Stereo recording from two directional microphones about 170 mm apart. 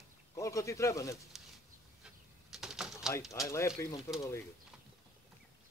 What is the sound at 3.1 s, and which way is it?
Speech, 20° left (ahead or behind).